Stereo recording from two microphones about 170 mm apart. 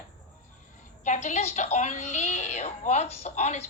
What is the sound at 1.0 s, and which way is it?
A woman's voice, 45° left (ahead or behind).